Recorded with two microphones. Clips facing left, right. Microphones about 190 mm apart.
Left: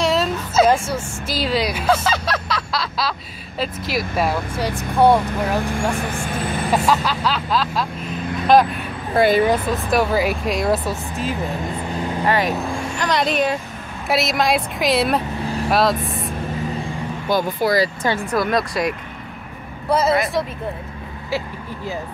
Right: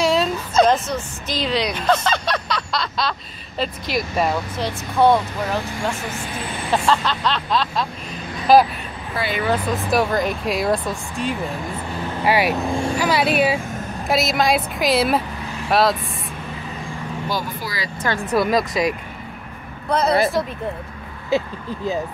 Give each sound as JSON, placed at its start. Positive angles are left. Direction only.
{"t": 0.0, "sound": "a woman's voice", "side_deg": 0}
{"t": 6.7, "sound": "speech", "side_deg": 10}
{"t": 9.1, "sound": "speech", "side_deg": 50}
{"t": 9.8, "sound": "speech", "side_deg": 5}
{"t": 12.3, "sound": "speech", "side_deg": -10}
{"t": 17.3, "sound": "speech", "side_deg": 55}
{"t": 18.3, "sound": "speech", "side_deg": 0}
{"t": 21.3, "sound": "speech", "side_deg": -20}